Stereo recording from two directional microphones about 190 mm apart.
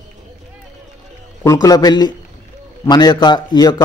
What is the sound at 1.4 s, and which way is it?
A man's voice, 20° left (ahead or behind).